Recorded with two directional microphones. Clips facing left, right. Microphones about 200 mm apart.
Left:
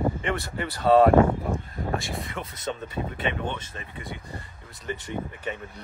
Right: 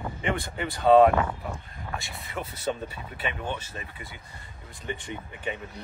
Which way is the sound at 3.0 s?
40° left (ahead or behind).